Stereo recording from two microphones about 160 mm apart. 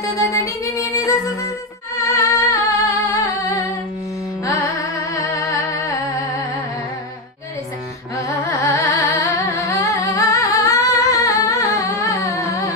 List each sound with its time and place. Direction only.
0.1 s music: 20° left (ahead or behind)
5.1 s music: 20° left (ahead or behind)
8.5 s carnatic music: 20° left (ahead or behind)